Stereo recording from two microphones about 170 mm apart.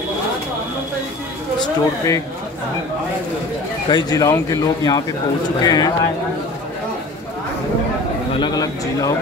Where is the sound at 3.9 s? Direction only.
25° left (ahead or behind).